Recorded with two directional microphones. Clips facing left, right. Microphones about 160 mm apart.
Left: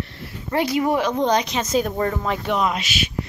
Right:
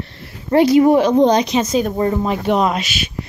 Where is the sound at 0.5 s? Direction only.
30° right (ahead or behind).